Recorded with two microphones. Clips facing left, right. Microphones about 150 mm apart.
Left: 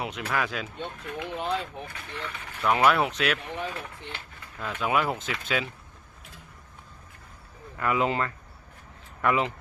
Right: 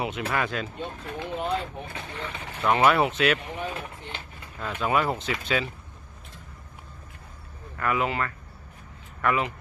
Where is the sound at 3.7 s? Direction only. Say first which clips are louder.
Right 2 dB; 20° right (ahead or behind).